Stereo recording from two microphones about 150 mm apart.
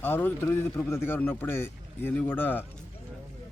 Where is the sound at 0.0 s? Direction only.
15° left (ahead or behind).